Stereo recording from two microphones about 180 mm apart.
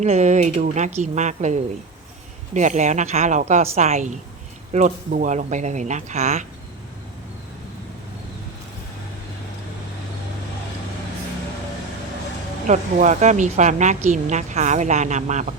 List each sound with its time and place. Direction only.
0.0 s a woman's voice: 40° right (ahead or behind)
12.6 s a woman's voice: 40° right (ahead or behind)